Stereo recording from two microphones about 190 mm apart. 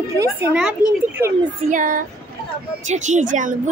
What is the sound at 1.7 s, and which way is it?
Speech, 45° right (ahead or behind).